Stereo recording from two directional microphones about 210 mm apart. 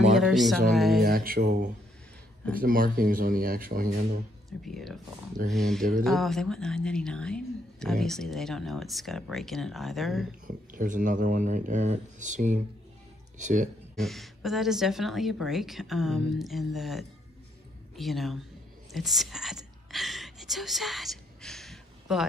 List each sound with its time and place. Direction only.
0.1 s music: centre (ahead or behind)
0.7 s speech: centre (ahead or behind)
1.0 s speech: 45° right (ahead or behind)
4.6 s speech: centre (ahead or behind)
10.4 s speech: 40° right (ahead or behind)
13.9 s speech: centre (ahead or behind)
18.9 s whispering: centre (ahead or behind)